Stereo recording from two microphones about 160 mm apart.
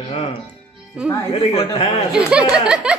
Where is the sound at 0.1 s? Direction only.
35° left (ahead or behind).